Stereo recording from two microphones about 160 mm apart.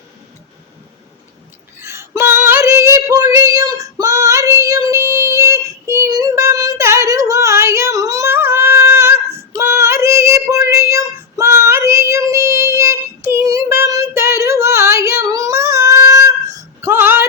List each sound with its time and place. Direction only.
1.8 s female singing: 15° right (ahead or behind)
13.3 s child singing: 20° right (ahead or behind)